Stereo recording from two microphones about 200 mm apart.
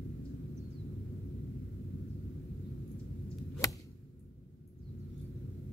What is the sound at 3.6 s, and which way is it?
Whip, 15° left (ahead or behind).